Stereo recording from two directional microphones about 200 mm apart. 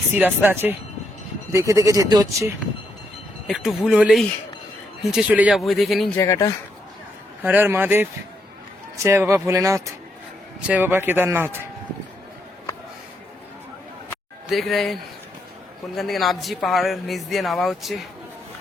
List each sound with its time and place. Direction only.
0.1 s speech: 10° right (ahead or behind)
3.4 s speech: centre (ahead or behind)
6.1 s speech: 15° left (ahead or behind)
7.4 s speech: 10° right (ahead or behind)
9.0 s speech: 15° right (ahead or behind)
14.5 s speech: centre (ahead or behind)
16.0 s speech: centre (ahead or behind)